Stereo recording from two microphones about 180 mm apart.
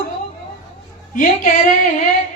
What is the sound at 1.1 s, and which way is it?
Speech, 50° left (ahead or behind).